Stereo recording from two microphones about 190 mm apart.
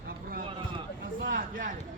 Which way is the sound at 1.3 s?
45° right (ahead or behind).